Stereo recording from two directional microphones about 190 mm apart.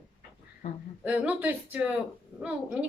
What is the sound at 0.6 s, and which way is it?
Speech, 35° left (ahead or behind).